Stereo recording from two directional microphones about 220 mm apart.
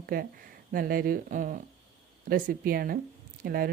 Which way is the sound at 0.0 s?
45° right (ahead or behind).